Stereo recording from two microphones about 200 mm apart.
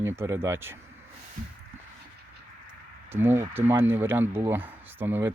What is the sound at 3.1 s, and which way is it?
Speech, 10° right (ahead or behind).